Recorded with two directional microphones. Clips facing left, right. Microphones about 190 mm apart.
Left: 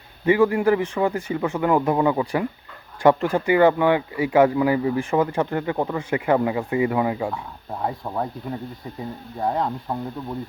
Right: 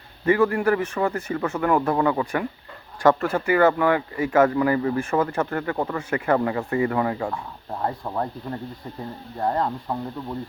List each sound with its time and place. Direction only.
0.3 s speech: 15° left (ahead or behind)